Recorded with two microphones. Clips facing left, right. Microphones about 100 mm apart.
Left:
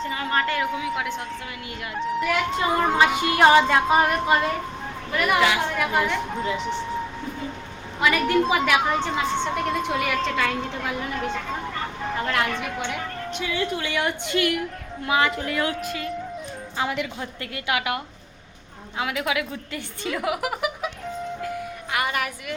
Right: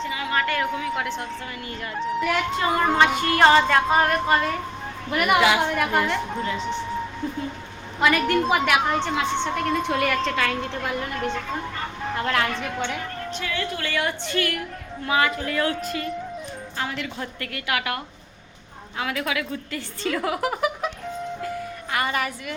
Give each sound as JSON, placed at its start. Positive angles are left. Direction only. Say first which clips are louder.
{"t": 0.1, "sound": "a sound", "louder": "left 1 dB", "side_deg": 35}
{"t": 0.6, "sound": "a woman's voice", "louder": "even", "side_deg": 5}
{"t": 5.2, "sound": "a woman's voice", "louder": "right 2 dB", "side_deg": -5}
{"t": 8.1, "sound": "a woman's voice", "louder": "left 2 dB", "side_deg": 0}
{"t": 15.8, "sound": "a woman's voice", "louder": "right 1 dB", "side_deg": 0}
{"t": 17.4, "sound": "a woman's voice", "louder": "left 1 dB", "side_deg": 20}
{"t": 21.9, "sound": "a woman's voice", "louder": "right 1 dB", "side_deg": 5}